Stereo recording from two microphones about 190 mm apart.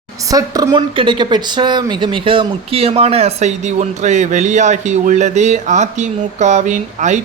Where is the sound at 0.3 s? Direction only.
20° right (ahead or behind).